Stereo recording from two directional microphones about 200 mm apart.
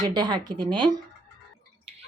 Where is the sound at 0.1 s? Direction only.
20° right (ahead or behind).